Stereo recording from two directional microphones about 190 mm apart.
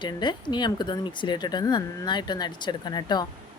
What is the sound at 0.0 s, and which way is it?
Speech, 25° left (ahead or behind).